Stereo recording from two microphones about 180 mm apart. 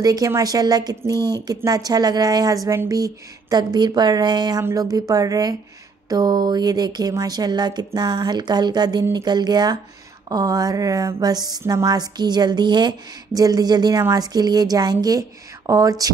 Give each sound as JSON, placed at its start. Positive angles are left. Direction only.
{"t": 0.0, "sound": "speech", "side_deg": -20}